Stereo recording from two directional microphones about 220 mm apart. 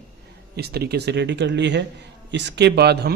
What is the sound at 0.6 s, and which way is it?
A man's voice, 45° right (ahead or behind).